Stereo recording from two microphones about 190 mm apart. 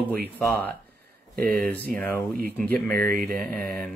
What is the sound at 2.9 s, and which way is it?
Speech, 50° right (ahead or behind).